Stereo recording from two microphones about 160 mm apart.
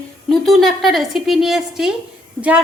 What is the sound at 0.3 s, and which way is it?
A woman's voice, centre (ahead or behind).